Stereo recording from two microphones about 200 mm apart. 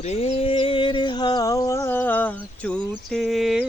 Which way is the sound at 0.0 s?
30° left (ahead or behind).